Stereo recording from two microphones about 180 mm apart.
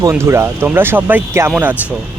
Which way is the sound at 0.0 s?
15° right (ahead or behind).